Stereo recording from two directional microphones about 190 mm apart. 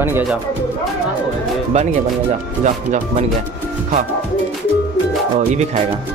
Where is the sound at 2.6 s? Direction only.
40° right (ahead or behind).